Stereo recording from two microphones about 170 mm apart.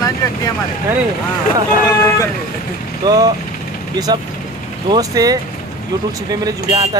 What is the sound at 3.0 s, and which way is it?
Speech, 20° right (ahead or behind).